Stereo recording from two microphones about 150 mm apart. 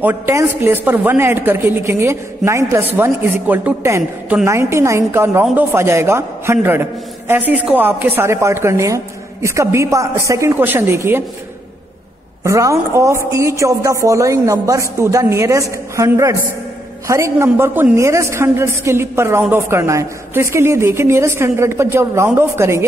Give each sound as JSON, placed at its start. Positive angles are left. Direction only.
{"t": 0.0, "sound": "speech", "side_deg": -15}
{"t": 12.4, "sound": "speech", "side_deg": -20}